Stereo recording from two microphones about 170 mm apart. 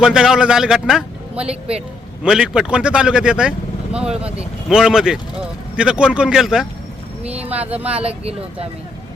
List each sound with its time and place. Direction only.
0.0 s speech: 5° right (ahead or behind)
7.3 s vehicle: 10° right (ahead or behind)
7.8 s speech: 5° right (ahead or behind)
8.0 s speech: 35° right (ahead or behind)